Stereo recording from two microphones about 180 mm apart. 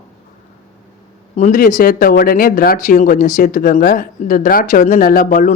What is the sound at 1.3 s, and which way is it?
Speech, 45° left (ahead or behind).